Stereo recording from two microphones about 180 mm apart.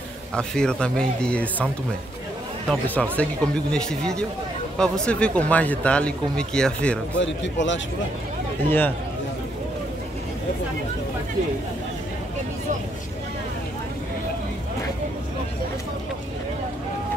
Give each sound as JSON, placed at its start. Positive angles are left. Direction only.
{"t": 0.4, "sound": "speech", "side_deg": 5}
{"t": 2.7, "sound": "speech", "side_deg": 5}
{"t": 7.2, "sound": "a man's voice", "side_deg": 90}
{"t": 8.6, "sound": "speech", "side_deg": 10}